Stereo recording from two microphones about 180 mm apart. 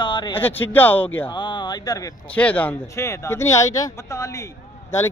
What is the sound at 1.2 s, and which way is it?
Speech, 25° left (ahead or behind).